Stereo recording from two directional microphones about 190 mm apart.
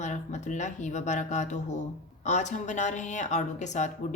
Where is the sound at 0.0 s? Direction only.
40° left (ahead or behind).